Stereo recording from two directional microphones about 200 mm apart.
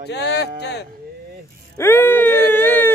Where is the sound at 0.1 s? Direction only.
60° left (ahead or behind).